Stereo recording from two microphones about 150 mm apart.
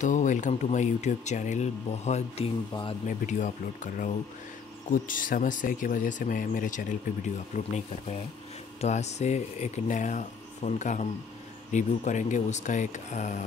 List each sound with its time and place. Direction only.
0.0 s speech: 55° left (ahead or behind)
2.7 s speech: 35° left (ahead or behind)
3.1 s speech: 55° left (ahead or behind)
7.5 s speech: 50° left (ahead or behind)